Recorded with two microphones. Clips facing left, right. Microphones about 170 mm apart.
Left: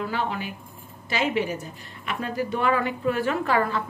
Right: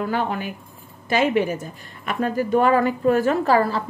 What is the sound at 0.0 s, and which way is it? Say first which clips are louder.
A woman's voice: right 4 dB; 50° right (ahead or behind).